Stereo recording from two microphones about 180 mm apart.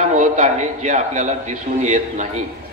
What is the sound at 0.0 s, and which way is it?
A man's voice, 40° right (ahead or behind).